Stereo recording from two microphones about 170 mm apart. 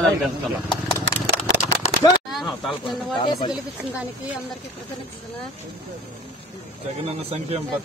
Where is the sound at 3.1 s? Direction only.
25° left (ahead or behind).